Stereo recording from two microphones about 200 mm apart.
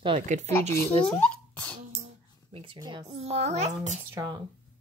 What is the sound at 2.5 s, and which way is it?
Speech, 25° right (ahead or behind).